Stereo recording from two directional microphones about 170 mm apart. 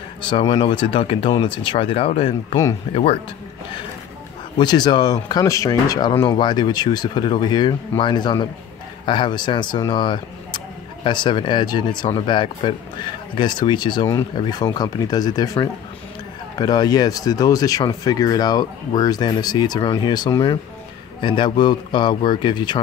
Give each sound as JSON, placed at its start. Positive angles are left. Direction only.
{"t": 0.3, "sound": "speech", "side_deg": 30}
{"t": 4.6, "sound": "speech", "side_deg": 25}